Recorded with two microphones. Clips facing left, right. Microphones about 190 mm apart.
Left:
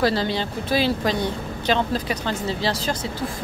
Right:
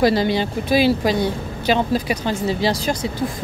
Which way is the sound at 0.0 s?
15° right (ahead or behind).